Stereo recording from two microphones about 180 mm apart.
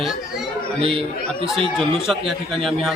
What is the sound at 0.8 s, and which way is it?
Speech, 30° right (ahead or behind).